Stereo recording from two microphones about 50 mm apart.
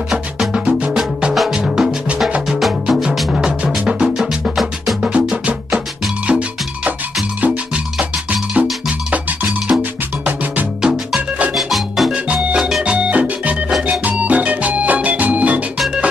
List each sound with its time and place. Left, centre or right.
0.1 s music: centre
5.3 s music: centre
11.5 s music: centre
12.8 s music: right
13.8 s organ: right